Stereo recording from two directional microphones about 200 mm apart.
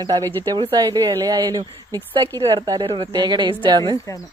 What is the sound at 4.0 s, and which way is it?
Speech, 15° left (ahead or behind).